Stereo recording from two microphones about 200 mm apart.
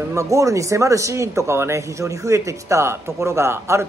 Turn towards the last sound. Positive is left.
turn(degrees=-15)  # may be behind; listen again after turning